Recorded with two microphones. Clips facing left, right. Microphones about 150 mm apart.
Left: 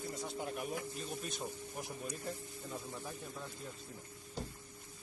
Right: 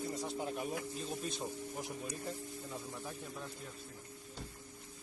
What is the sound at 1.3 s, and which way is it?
Speech, 20° right (ahead or behind).